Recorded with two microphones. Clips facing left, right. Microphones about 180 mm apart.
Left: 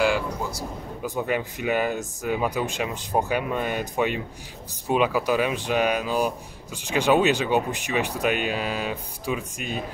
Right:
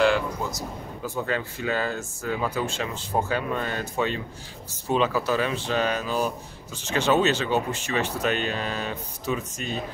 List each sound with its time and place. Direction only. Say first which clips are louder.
1.0 s speech: left 2 dB; 15° left (ahead or behind)